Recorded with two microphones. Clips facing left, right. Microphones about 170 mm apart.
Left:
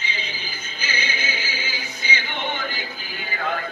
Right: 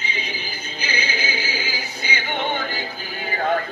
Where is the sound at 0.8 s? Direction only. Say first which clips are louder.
Right 2 dB; 35° right (ahead or behind).